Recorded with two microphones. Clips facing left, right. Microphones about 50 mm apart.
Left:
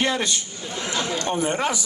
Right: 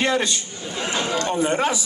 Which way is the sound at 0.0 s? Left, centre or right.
Right.